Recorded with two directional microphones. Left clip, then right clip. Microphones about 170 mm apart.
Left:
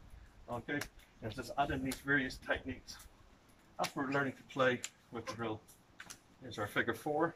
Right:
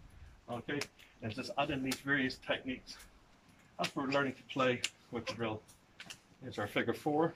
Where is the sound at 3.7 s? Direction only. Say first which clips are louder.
Right 2 dB; 10° right (ahead or behind).